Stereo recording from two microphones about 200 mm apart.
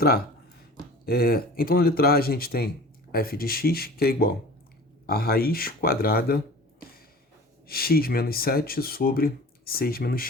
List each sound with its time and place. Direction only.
1.0 s speech: 50° left (ahead or behind)
7.7 s speech: 50° left (ahead or behind)